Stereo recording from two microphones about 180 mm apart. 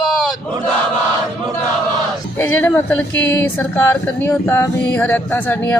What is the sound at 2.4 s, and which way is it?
Speech, 15° left (ahead or behind).